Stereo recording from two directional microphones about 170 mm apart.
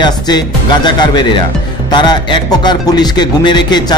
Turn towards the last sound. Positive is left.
turn(degrees=25)  # may be behind; listen again after turning